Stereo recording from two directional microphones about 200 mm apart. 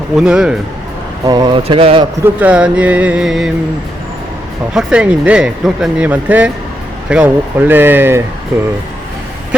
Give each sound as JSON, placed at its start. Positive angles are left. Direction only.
{"t": 0.2, "sound": "speech", "side_deg": -5}
{"t": 1.3, "sound": "speech", "side_deg": -20}
{"t": 2.2, "sound": "music", "side_deg": -5}
{"t": 4.7, "sound": "speech", "side_deg": -5}
{"t": 7.1, "sound": "music", "side_deg": -5}